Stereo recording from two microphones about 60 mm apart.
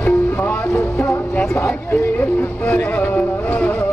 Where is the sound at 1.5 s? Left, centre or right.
Left.